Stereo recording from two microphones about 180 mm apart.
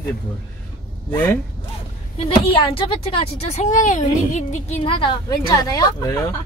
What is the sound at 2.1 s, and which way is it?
A woman's voice, 30° left (ahead or behind).